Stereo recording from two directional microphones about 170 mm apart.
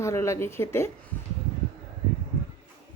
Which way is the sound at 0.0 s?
15° left (ahead or behind).